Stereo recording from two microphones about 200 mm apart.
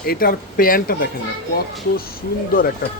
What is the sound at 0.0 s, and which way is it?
Speech, 50° left (ahead or behind).